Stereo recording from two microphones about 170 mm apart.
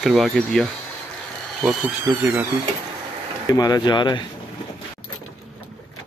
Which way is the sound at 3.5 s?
20° left (ahead or behind).